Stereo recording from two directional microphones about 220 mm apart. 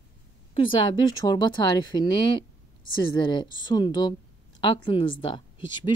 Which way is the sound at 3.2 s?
20° left (ahead or behind).